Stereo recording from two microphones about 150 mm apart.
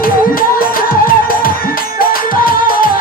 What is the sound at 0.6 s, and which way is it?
Music, 70° left (ahead or behind).